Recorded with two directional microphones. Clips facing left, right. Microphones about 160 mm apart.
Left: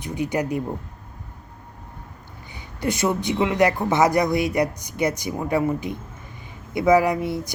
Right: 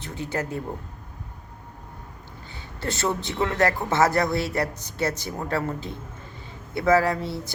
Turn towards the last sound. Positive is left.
turn(degrees=15)  # may be behind; listen again after turning